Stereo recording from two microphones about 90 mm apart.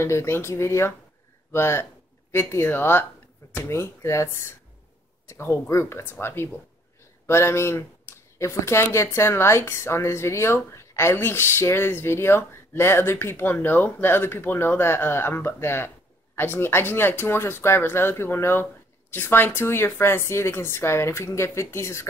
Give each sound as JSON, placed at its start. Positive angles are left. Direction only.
{"t": 0.0, "sound": "speech", "side_deg": 30}